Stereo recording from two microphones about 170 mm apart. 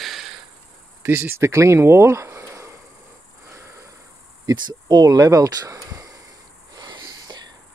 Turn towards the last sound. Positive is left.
turn(degrees=-25)  # may be behind; listen again after turning